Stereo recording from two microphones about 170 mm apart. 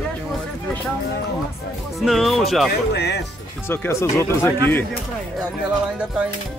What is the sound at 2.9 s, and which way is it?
Speech, 75° left (ahead or behind).